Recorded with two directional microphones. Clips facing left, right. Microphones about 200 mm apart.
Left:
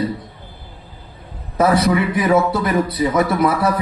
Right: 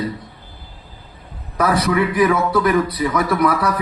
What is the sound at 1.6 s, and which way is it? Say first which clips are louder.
A man's voice: left 2 dB; 25° left (ahead or behind).